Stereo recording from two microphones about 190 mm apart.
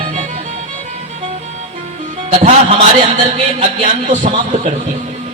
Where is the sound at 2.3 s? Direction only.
35° right (ahead or behind).